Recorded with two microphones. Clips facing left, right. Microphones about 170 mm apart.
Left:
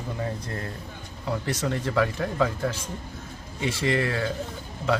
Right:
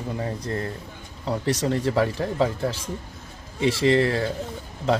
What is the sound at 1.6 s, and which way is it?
Speech, 30° right (ahead or behind).